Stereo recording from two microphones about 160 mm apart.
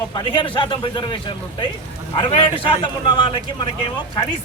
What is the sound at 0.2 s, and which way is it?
A man's voice, 30° left (ahead or behind).